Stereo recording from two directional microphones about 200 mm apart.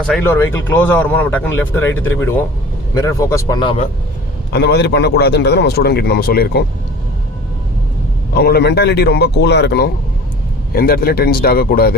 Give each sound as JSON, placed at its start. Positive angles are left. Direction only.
{"t": 0.1, "sound": "speech", "side_deg": 10}
{"t": 4.5, "sound": "a man's voice", "side_deg": 55}
{"t": 8.3, "sound": "a man's voice", "side_deg": 50}